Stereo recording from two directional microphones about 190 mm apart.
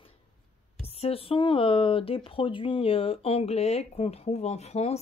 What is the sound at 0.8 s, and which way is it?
Speech, 30° left (ahead or behind).